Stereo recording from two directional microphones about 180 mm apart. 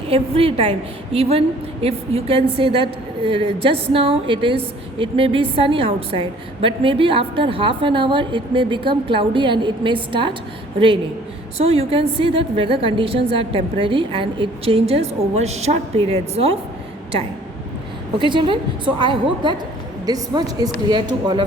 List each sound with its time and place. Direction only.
0.1 s a woman's voice: 30° right (ahead or behind)
11.6 s a woman's voice: 35° right (ahead or behind)
18.2 s a woman's voice: 30° right (ahead or behind)